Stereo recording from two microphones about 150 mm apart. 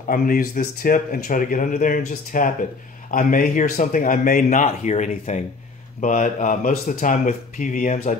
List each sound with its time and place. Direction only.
0.1 s speech: 70° left (ahead or behind); by 8.2 s 50° left (ahead or behind)